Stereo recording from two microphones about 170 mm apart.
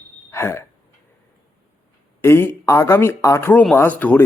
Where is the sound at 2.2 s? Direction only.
15° left (ahead or behind).